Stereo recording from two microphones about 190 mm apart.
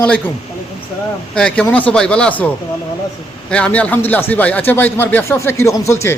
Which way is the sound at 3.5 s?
5° left (ahead or behind).